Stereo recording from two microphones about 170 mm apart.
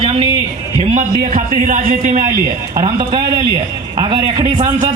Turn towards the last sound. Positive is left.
turn(degrees=-25)  # may be behind; listen again after turning